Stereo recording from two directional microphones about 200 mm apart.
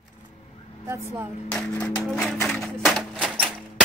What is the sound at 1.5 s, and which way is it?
Music, 5° left (ahead or behind).